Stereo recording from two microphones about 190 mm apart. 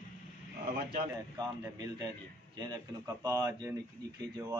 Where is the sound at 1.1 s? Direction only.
20° right (ahead or behind).